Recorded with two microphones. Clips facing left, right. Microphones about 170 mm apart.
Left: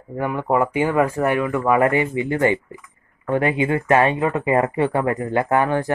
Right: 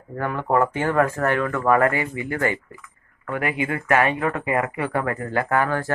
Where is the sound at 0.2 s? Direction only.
15° left (ahead or behind).